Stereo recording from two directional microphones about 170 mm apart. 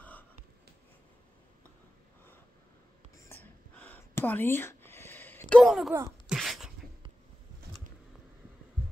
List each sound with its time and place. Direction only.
3.3 s a sound: 10° left (ahead or behind)
5.6 s speech: centre (ahead or behind)
6.2 s sneeze: centre (ahead or behind)